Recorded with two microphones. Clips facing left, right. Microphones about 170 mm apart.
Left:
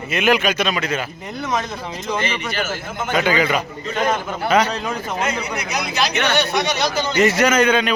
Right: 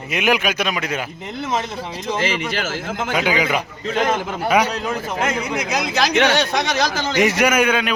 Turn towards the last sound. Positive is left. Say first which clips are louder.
# left 1 dB
turn(degrees=-10)  # may be behind; listen again after turning